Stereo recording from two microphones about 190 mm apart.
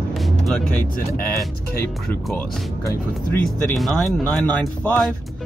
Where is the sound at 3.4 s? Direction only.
Centre (ahead or behind).